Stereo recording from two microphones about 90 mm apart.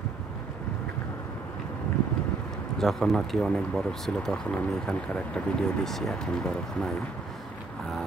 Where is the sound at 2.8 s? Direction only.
5° left (ahead or behind).